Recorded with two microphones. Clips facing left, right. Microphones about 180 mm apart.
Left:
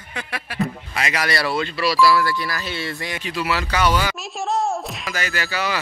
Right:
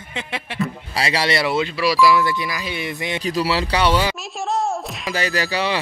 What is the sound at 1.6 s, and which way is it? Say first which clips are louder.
Speech: left 1 dB; 10° right (ahead or behind).